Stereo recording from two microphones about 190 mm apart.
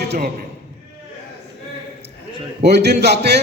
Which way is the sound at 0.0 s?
60° right (ahead or behind).